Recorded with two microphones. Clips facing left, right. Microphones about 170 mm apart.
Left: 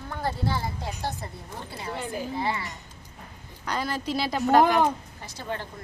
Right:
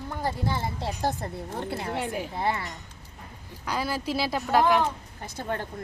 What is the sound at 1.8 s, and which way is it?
Speech, 65° right (ahead or behind).